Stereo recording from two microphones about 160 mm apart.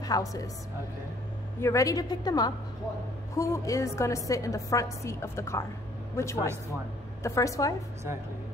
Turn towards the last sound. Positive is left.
turn(degrees=20)  # may be behind; listen again after turning